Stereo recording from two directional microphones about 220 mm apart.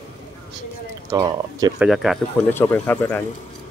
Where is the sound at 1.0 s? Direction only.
15° right (ahead or behind).